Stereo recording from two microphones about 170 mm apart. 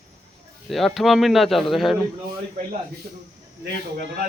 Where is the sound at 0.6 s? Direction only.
Centre (ahead or behind).